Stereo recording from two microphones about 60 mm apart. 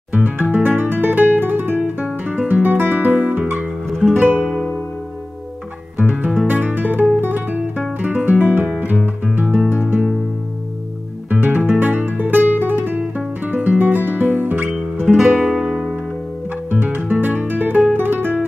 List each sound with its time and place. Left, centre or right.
0.1 s music: right
3.8 s music: centre
4.2 s music: right
5.9 s music: right
8.0 s guitar: right
8.6 s music: right
11.2 s music: right
15.3 s music: centre
16.7 s guitar: right